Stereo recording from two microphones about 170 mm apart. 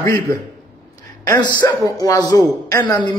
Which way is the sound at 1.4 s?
25° left (ahead or behind).